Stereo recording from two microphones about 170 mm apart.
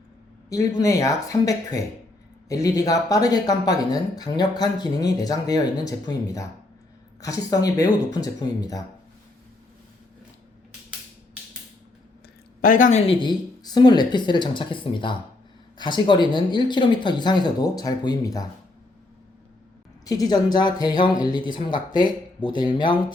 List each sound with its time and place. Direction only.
0.5 s speech: 20° left (ahead or behind)
12.6 s a woman's voice: 50° left (ahead or behind)
13.1 s speech: 30° left (ahead or behind)
20.1 s speech: 25° left (ahead or behind)